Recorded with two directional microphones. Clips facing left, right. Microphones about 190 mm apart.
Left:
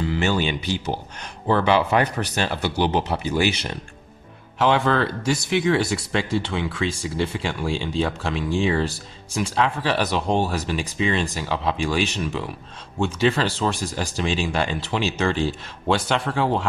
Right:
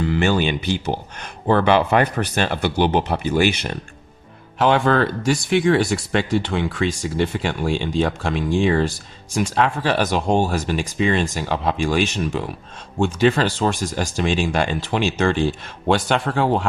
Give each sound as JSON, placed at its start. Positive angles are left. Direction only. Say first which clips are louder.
{"t": 0.0, "sound": "a man's voice", "louder": "right 3 dB", "side_deg": -55}
{"t": 4.6, "sound": "speech", "louder": "right 3 dB", "side_deg": -50}